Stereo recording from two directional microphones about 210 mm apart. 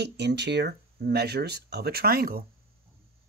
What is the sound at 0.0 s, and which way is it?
Speech, 55° right (ahead or behind).